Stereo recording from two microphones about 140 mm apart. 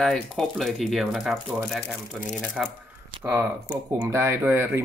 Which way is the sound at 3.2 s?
15° right (ahead or behind).